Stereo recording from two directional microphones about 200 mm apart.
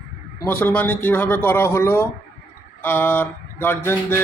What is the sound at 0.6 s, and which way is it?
Mantra, 10° left (ahead or behind).